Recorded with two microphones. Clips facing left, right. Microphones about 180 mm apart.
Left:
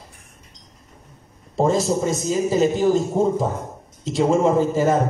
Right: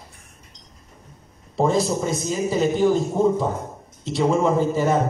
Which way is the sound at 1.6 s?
45° left (ahead or behind).